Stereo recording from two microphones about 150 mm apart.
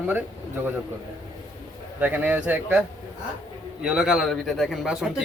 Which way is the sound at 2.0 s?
10° right (ahead or behind).